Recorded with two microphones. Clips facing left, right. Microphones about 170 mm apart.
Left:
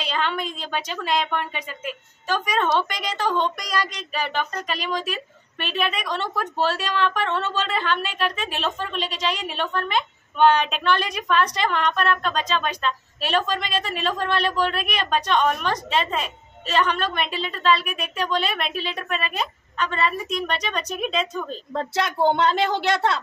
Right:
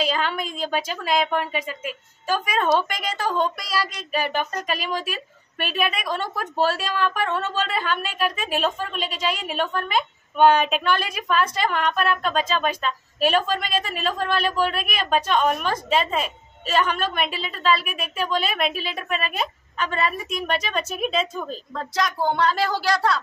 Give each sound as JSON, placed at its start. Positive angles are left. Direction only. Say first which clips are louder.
{"t": 0.1, "sound": "a woman's voice", "louder": "even", "side_deg": -10}
{"t": 21.7, "sound": "a woman's voice", "louder": "left 2 dB", "side_deg": 25}